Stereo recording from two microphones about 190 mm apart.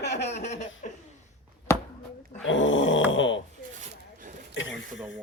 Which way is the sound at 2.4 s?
80° left.